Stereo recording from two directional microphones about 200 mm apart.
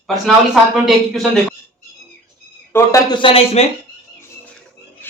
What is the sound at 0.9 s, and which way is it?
Speech, centre (ahead or behind).